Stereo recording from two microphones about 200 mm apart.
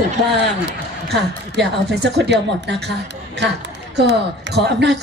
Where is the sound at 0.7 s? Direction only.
60° right (ahead or behind).